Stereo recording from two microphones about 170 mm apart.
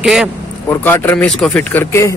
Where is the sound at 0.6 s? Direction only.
15° left (ahead or behind).